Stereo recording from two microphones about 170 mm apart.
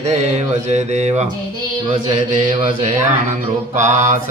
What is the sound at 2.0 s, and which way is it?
Mantra, 45° right (ahead or behind).